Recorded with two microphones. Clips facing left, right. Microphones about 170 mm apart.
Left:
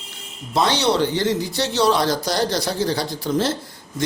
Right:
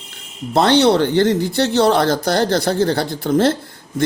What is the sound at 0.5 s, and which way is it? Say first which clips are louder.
Speech: right 6 dB; 55° right (ahead or behind).